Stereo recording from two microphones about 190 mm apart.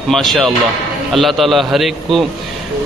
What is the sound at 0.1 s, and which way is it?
Speech, centre (ahead or behind).